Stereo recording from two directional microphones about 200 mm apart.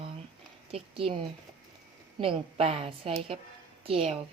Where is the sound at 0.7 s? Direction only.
30° right (ahead or behind).